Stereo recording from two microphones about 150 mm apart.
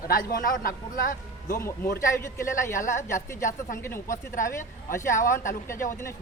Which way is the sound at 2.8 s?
55° left (ahead or behind).